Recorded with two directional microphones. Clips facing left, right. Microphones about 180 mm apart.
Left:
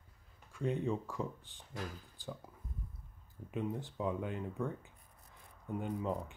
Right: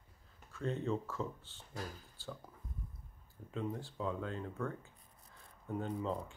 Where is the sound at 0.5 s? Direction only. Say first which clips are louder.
Left 2 dB; 15° left (ahead or behind).